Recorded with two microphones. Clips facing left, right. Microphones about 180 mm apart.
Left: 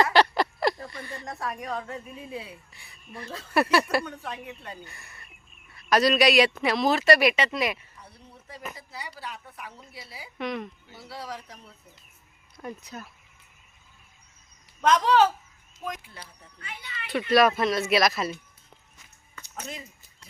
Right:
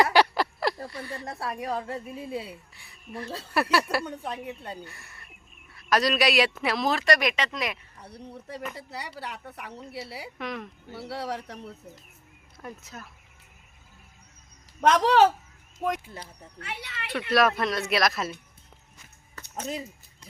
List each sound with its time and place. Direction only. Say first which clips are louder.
0.0 s a sound: even; 10° right (ahead or behind)
1.2 s a woman's voice: even; 30° right (ahead or behind)
2.7 s speech: right 6 dB; centre (ahead or behind)
3.8 s a woman's voice: left 2 dB; 15° right (ahead or behind)
4.9 s speech: right 1 dB; centre (ahead or behind)
8.3 s a woman's voice: right 4 dB; 65° right (ahead or behind)
10.3 s speech: left 5 dB; centre (ahead or behind)
10.8 s speech: right 6 dB; 65° right (ahead or behind)
12.6 s speech: left 3 dB; centre (ahead or behind)
14.8 s a woman's voice: right 1 dB; 70° right (ahead or behind)
16.6 s a woman's voice: right 4 dB; 70° right (ahead or behind)
17.1 s speech: left 3 dB; centre (ahead or behind)